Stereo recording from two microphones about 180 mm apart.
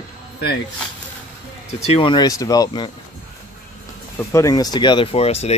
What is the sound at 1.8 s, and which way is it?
Speech, 30° left (ahead or behind).